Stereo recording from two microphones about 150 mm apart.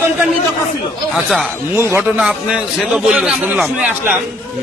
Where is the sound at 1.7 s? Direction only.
15° right (ahead or behind).